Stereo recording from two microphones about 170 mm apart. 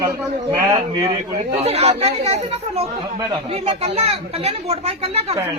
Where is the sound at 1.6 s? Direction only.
35° right (ahead or behind).